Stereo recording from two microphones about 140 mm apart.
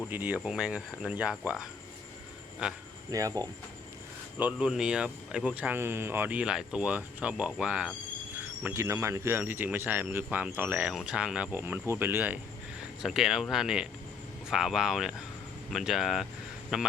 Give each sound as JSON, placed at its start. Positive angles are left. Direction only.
{"t": 0.1, "sound": "speech", "side_deg": -10}
{"t": 3.1, "sound": "speech", "side_deg": -25}
{"t": 4.4, "sound": "speech", "side_deg": -10}
{"t": 8.6, "sound": "speech", "side_deg": -20}